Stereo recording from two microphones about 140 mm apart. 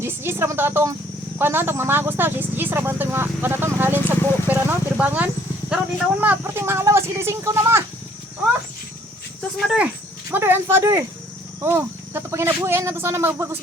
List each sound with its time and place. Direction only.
0.0 s speech: 15° right (ahead or behind)
9.6 s speech: 5° right (ahead or behind)
10.3 s speech: 15° right (ahead or behind)